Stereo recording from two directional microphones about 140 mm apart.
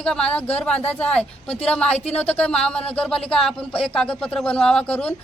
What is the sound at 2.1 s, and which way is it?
Speech, 50° left (ahead or behind).